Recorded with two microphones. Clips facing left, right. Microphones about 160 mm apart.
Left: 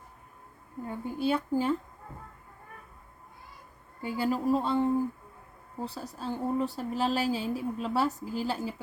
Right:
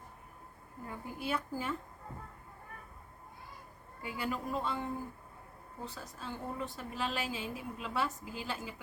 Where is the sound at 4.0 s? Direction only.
30° left (ahead or behind).